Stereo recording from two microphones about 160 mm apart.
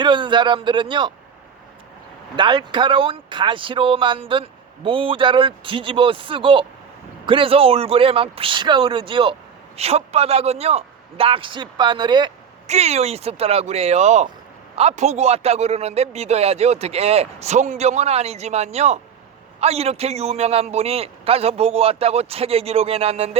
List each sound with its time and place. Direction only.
0.0 s speech: 30° right (ahead or behind)
2.3 s speech: 30° right (ahead or behind)
12.6 s speech: 40° right (ahead or behind)